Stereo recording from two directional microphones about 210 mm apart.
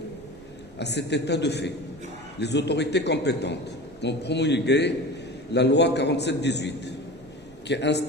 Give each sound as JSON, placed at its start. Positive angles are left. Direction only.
{"t": 0.7, "sound": "a man's voice", "side_deg": 55}